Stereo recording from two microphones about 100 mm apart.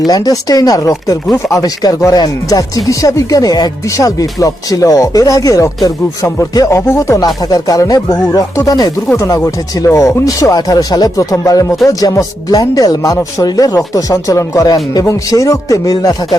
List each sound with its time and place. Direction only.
0.1 s speech: 40° left (ahead or behind)